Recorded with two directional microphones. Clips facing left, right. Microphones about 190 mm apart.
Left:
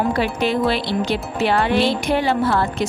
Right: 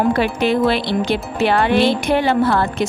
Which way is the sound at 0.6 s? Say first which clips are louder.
Right 3 dB; 60° right (ahead or behind).